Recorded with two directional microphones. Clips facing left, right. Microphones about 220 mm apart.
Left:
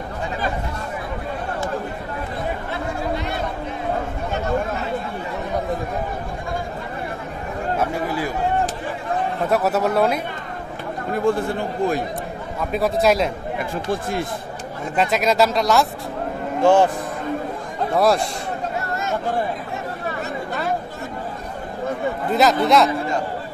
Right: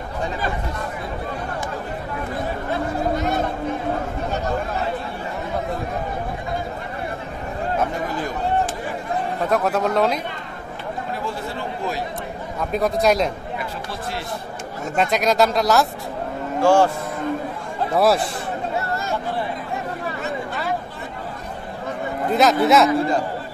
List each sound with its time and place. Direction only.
2.7 s chatter: 45° right (ahead or behind)
9.5 s a man's voice: 5° left (ahead or behind)
11.2 s a man's voice: 50° left (ahead or behind)
12.7 s speech: centre (ahead or behind)
13.6 s a man's voice: 50° left (ahead or behind)
15.0 s speech: centre (ahead or behind)
16.6 s a man's voice: 20° left (ahead or behind)
17.9 s speech: centre (ahead or behind)
22.3 s speech: centre (ahead or behind)